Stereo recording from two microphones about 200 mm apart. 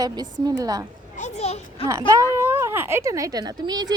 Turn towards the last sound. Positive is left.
turn(degrees=-20)  # may be behind; listen again after turning